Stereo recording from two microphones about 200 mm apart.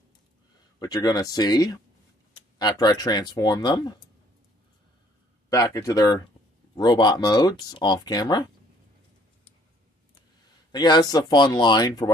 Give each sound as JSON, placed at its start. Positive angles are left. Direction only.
{"t": 0.7, "sound": "speech", "side_deg": 20}
{"t": 5.5, "sound": "speech", "side_deg": 15}
{"t": 10.7, "sound": "speech", "side_deg": 20}